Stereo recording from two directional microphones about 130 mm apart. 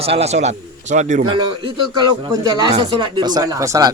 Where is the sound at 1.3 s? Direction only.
35° right (ahead or behind).